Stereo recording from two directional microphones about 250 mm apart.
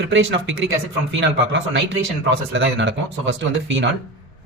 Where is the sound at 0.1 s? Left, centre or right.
Right.